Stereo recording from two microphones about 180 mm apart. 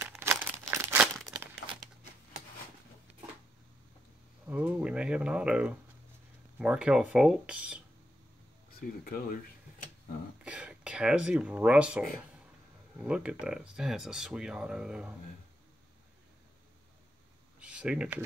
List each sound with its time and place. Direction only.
0.2 s crumpling: 10° right (ahead or behind)
4.5 s speech: 5° right (ahead or behind)
8.7 s speech: 55° left (ahead or behind)
10.4 s speech: 5° right (ahead or behind)
17.6 s a sound: 5° right (ahead or behind)